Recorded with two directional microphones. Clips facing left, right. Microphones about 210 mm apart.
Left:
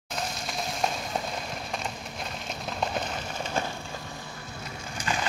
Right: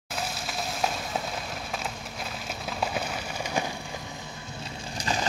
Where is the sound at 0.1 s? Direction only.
5° right (ahead or behind).